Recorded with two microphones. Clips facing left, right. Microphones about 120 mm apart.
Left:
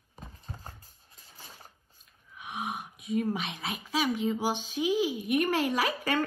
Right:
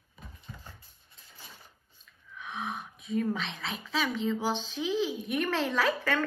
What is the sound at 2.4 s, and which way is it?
A woman's voice, 15° left (ahead or behind).